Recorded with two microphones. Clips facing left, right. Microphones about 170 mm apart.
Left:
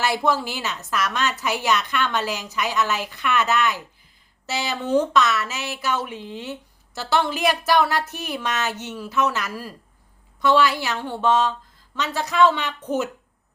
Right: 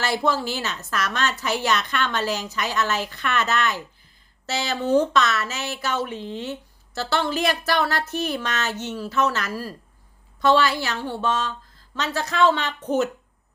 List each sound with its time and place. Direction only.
0.3 s speech: 15° left (ahead or behind)